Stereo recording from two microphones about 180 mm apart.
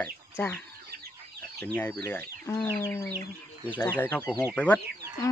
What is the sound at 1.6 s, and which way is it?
Speech, 5° left (ahead or behind).